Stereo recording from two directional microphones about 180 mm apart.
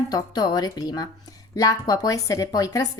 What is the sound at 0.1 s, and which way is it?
Speech, 20° left (ahead or behind).